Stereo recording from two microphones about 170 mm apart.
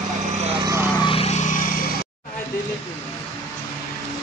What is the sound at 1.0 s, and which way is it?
Vehicle, 35° left (ahead or behind).